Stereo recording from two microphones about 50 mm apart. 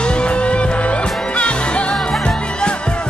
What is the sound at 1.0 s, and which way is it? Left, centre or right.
Music, centre.